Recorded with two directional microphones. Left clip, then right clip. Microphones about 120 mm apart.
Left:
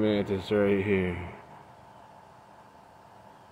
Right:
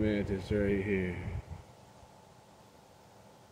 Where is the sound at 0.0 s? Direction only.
15° left (ahead or behind).